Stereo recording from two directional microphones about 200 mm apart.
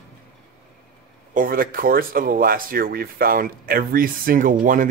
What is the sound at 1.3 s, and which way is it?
Speech, 45° right (ahead or behind).